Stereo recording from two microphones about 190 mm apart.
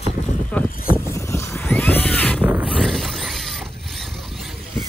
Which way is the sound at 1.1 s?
15° left (ahead or behind).